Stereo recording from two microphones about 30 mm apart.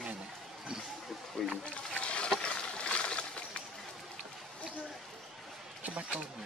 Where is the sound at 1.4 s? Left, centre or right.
Left.